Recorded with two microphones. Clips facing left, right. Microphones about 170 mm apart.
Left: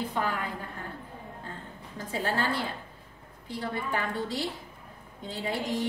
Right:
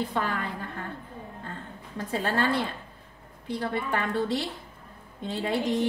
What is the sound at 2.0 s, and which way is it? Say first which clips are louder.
Speech: right 2 dB; 60° right (ahead or behind).